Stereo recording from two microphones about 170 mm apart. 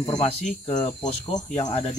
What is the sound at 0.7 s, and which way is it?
Speech, 45° left (ahead or behind).